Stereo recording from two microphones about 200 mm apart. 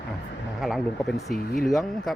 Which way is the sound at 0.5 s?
Centre (ahead or behind).